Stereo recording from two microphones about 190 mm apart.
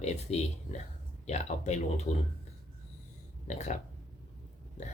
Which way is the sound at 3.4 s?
40° left (ahead or behind).